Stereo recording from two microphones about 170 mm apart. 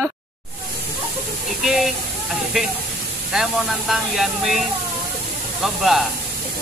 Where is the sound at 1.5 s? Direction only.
Centre (ahead or behind).